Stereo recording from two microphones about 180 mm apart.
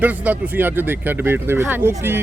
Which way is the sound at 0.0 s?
10° right (ahead or behind).